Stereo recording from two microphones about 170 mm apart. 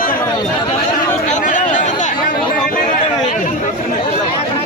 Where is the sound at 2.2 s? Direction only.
55° left (ahead or behind).